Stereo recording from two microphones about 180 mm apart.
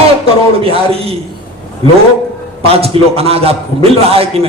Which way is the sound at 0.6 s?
30° right (ahead or behind).